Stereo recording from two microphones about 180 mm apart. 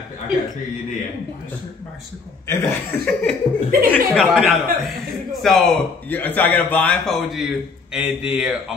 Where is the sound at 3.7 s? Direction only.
50° right (ahead or behind).